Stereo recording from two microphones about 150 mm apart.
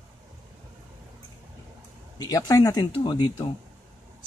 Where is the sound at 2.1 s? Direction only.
25° left (ahead or behind).